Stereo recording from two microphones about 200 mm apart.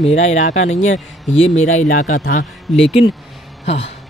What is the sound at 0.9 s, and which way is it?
Speech, 75° left (ahead or behind).